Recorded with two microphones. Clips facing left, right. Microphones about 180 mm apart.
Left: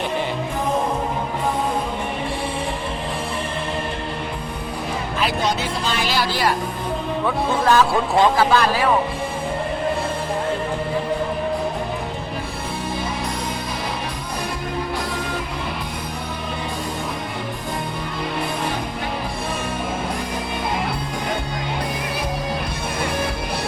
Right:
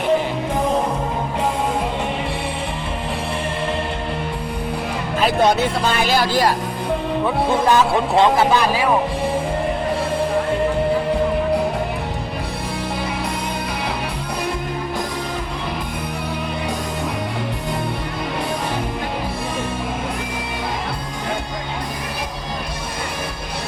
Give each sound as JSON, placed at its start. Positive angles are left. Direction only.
{"t": 5.2, "sound": "speech", "side_deg": -55}
{"t": 7.6, "sound": "speech", "side_deg": -20}